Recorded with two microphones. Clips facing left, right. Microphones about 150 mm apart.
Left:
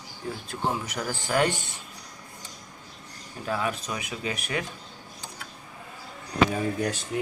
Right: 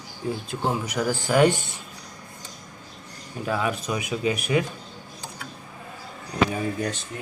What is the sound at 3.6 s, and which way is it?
Speech, 10° right (ahead or behind).